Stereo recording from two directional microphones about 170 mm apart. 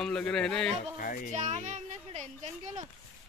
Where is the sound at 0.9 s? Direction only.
55° left (ahead or behind).